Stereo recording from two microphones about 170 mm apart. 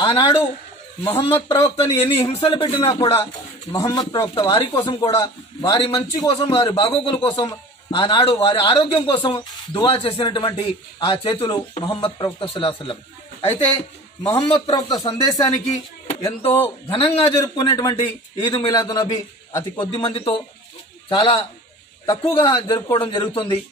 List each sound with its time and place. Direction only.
0.0 s a man's voice: 30° left (ahead or behind)
14.2 s a man's voice: 30° left (ahead or behind); by 16.7 s 15° left (ahead or behind)
16.9 s a man's voice: 35° left (ahead or behind)